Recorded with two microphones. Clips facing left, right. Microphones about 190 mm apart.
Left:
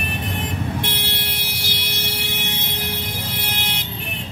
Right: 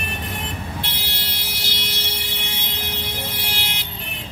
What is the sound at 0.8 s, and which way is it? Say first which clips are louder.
Vehicle: left 5 dB; 60° left (ahead or behind).